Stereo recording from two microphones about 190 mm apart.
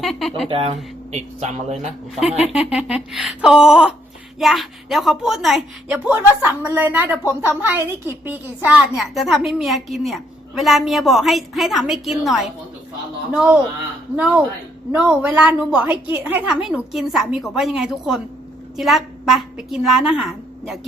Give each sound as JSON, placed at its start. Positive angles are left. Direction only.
{"t": 0.0, "sound": "a woman's voice", "side_deg": 0}
{"t": 0.5, "sound": "speech", "side_deg": -30}
{"t": 2.1, "sound": "a woman's voice", "side_deg": 0}
{"t": 14.9, "sound": "a woman's voice", "side_deg": -5}